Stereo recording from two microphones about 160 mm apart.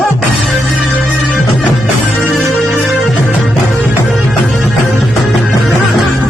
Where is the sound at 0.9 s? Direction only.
5° left (ahead or behind).